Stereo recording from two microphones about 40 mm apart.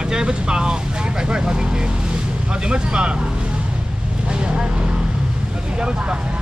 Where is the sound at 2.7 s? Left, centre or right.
Right.